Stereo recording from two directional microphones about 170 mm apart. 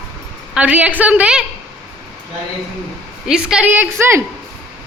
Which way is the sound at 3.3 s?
5° right (ahead or behind).